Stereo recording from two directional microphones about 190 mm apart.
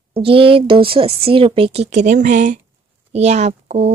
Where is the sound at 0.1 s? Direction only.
30° right (ahead or behind).